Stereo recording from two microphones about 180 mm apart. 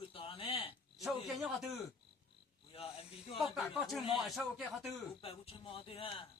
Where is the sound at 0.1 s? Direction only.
30° left (ahead or behind).